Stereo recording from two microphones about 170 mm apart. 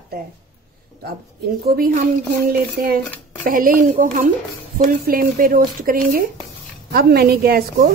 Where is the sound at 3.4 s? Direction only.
55° right (ahead or behind).